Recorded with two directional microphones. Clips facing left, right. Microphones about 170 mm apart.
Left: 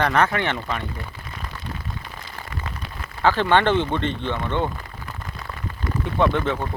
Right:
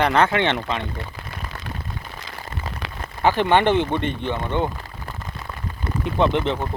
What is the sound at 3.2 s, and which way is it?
Speech, 15° right (ahead or behind).